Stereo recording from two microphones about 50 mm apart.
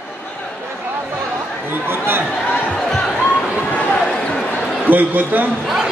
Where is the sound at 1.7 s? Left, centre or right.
Right.